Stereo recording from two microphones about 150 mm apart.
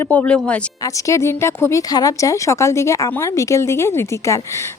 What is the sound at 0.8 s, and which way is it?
Speech, 20° left (ahead or behind).